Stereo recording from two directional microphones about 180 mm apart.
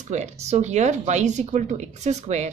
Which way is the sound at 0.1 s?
40° right (ahead or behind).